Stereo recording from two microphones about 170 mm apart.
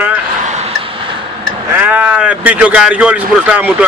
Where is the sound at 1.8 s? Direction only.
5° right (ahead or behind).